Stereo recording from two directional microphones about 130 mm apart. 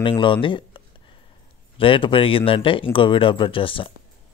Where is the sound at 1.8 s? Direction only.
40° left (ahead or behind).